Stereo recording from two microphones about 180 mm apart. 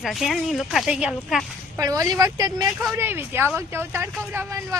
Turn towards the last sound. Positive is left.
turn(degrees=-15)  # may be behind; listen again after turning